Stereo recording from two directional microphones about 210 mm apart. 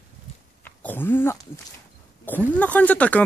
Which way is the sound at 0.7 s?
10° left (ahead or behind).